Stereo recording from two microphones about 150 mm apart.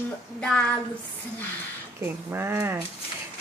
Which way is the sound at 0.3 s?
10° left (ahead or behind).